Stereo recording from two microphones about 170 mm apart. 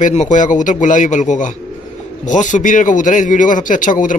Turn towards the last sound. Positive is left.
turn(degrees=50)  # may be behind; listen again after turning